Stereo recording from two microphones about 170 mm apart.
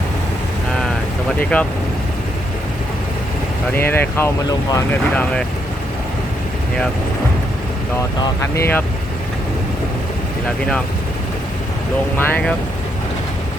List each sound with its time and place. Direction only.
1.4 s speech: 5° left (ahead or behind)
3.8 s speech: 10° left (ahead or behind)
5.1 s speech: 5° left (ahead or behind)
8.2 s speech: 15° left (ahead or behind)
12.1 s speech: 10° left (ahead or behind)